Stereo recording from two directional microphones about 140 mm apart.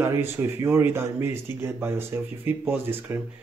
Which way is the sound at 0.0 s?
20° right (ahead or behind).